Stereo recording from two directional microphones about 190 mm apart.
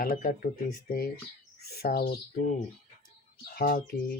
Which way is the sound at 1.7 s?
50° left (ahead or behind).